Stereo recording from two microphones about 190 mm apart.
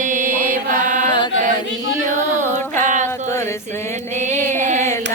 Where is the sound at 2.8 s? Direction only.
40° right (ahead or behind).